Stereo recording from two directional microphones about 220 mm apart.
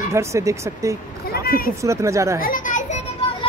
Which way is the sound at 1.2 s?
45° left (ahead or behind).